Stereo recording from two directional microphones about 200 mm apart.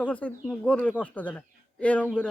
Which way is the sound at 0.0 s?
5° left (ahead or behind).